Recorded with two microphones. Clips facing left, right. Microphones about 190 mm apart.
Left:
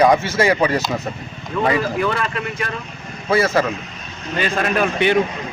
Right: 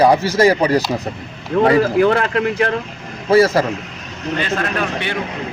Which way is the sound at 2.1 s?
70° right (ahead or behind).